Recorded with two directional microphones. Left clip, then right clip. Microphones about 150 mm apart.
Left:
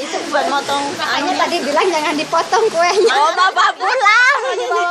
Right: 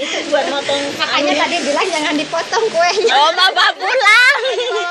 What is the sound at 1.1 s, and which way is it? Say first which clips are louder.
Speech: right 2 dB; 50° left (ahead or behind).